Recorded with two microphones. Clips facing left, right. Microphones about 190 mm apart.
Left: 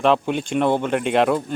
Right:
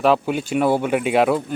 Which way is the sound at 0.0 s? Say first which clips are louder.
Right 1 dB; 5° right (ahead or behind).